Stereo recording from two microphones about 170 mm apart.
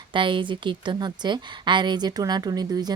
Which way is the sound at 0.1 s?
30° right (ahead or behind).